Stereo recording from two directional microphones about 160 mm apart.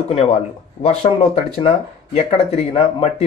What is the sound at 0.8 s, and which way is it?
Speech, 40° left (ahead or behind).